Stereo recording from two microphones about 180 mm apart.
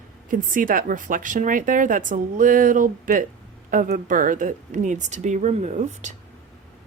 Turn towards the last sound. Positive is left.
turn(degrees=-40)  # may be behind; listen again after turning